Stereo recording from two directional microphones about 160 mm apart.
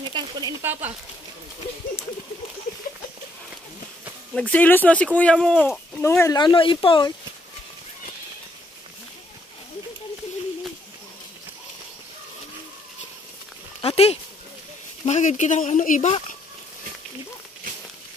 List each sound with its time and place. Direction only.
0.1 s speech: 25° right (ahead or behind)
4.3 s speech: 5° left (ahead or behind)
5.9 s speech: 15° left (ahead or behind)
6.3 s speech: 30° left (ahead or behind)
13.7 s a sound: 40° left (ahead or behind)
15.0 s speech: 50° left (ahead or behind)